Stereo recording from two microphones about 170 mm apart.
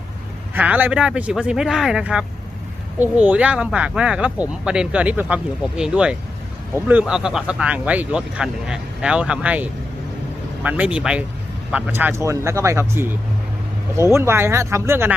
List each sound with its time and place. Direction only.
0.5 s speech: 10° right (ahead or behind)